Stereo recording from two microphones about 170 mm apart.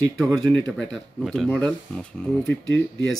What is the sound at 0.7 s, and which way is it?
Speech, centre (ahead or behind).